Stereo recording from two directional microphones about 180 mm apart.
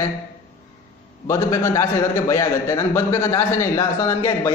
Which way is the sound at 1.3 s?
15° left (ahead or behind).